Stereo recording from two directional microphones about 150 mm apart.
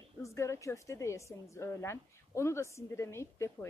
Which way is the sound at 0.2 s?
20° left (ahead or behind).